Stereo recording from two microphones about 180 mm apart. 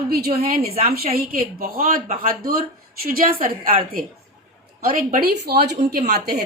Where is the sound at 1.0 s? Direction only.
55° right (ahead or behind).